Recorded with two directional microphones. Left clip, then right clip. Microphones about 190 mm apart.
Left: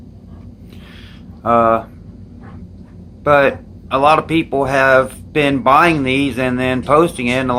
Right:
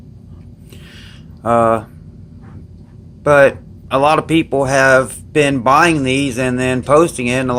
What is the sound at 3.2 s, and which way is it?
Speech, 45° right (ahead or behind).